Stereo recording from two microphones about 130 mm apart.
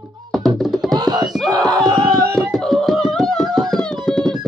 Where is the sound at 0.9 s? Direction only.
30° right (ahead or behind).